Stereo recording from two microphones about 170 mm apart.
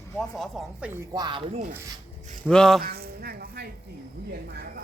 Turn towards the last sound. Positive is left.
turn(degrees=-65)  # may be behind; listen again after turning